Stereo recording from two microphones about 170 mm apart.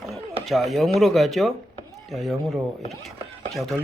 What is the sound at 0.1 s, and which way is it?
Speech, centre (ahead or behind).